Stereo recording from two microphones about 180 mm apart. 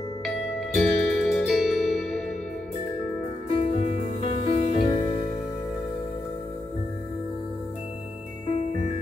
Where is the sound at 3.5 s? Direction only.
35° left (ahead or behind).